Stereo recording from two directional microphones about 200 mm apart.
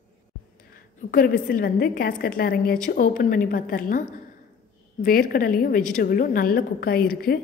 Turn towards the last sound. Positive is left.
turn(degrees=45)  # may be behind; listen again after turning